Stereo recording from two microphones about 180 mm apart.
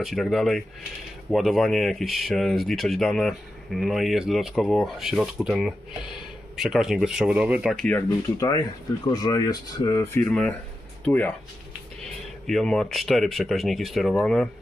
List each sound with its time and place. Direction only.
0.0 s speech: centre (ahead or behind)
8.4 s speech: 20° left (ahead or behind)
12.4 s speech: centre (ahead or behind)